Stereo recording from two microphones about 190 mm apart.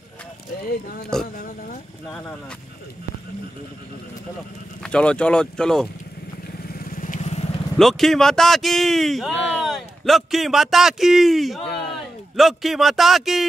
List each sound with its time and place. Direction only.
0.7 s speech: 55° left (ahead or behind)
4.8 s speech: 5° left (ahead or behind)
6.7 s vehicle: 50° left (ahead or behind)
7.7 s a man's voice: centre (ahead or behind)